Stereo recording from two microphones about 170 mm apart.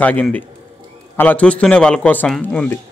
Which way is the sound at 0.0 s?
10° left (ahead or behind).